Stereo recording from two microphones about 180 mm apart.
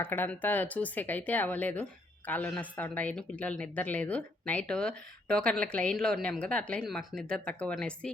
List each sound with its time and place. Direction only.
0.0 s speech: 10° left (ahead or behind)